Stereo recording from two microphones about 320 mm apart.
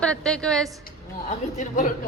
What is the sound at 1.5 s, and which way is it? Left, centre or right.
Speech, left.